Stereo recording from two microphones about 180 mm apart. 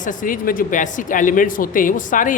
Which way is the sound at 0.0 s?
45° left (ahead or behind).